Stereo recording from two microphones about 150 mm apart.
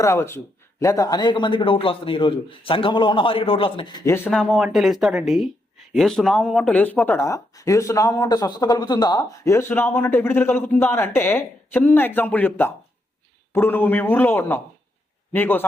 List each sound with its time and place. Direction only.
0.0 s speech: 20° left (ahead or behind); by 4.0 s 35° left (ahead or behind)
4.0 s speech: 20° left (ahead or behind)
4.3 s speech: centre (ahead or behind)